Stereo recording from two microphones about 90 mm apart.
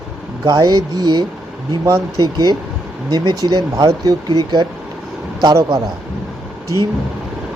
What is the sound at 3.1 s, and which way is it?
Speech, 55° right (ahead or behind).